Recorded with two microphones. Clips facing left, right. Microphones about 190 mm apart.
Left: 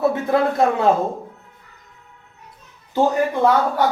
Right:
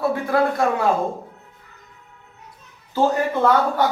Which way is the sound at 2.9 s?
20° left (ahead or behind).